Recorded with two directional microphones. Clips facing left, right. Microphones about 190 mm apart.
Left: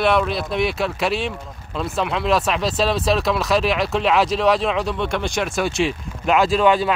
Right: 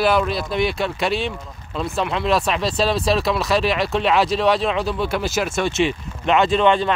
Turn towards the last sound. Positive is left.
turn(degrees=5)  # may be behind; listen again after turning